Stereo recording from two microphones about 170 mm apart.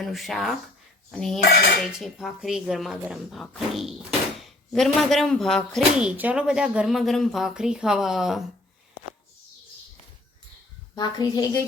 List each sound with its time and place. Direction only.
0.0 s speech: centre (ahead or behind)
10.9 s a child's voice: 25° left (ahead or behind)